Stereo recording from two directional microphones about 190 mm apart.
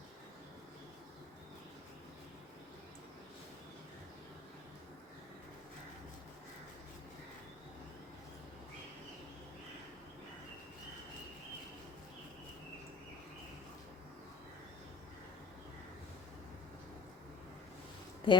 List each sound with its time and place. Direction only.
18.3 s a woman's voice: 25° left (ahead or behind)